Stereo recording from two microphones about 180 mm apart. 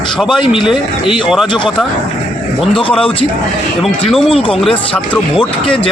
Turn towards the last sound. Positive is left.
turn(degrees=5)  # may be behind; listen again after turning